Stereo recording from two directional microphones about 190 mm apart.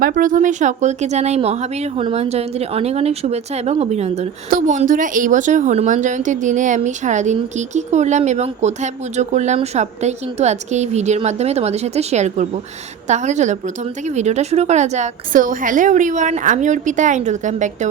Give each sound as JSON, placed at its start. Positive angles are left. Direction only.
{"t": 0.0, "sound": "a woman's voice", "side_deg": -45}